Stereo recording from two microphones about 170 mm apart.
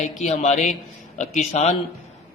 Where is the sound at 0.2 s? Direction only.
45° left (ahead or behind).